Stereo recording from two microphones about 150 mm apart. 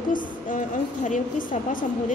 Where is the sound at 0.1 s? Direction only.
60° left (ahead or behind).